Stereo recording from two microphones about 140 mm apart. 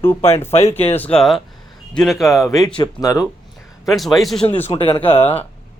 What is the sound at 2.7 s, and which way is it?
Speech, 30° left (ahead or behind).